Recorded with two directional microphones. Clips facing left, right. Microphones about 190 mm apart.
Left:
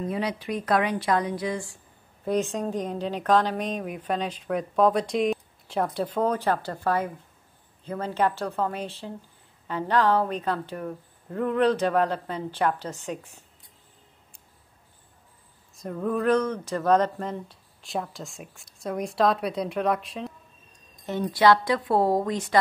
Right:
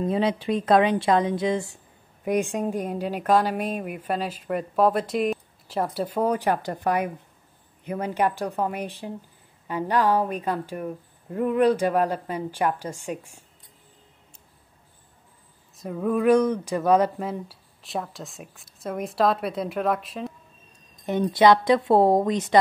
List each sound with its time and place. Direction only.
0.0 s a woman's voice: 25° right (ahead or behind); by 13.4 s 10° right (ahead or behind)
15.8 s speech: 5° right (ahead or behind)
21.0 s a woman's voice: 20° right (ahead or behind)